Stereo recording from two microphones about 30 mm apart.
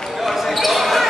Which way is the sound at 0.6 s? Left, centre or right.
Centre.